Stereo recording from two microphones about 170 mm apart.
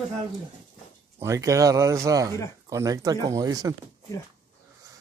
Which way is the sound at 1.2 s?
20° right (ahead or behind).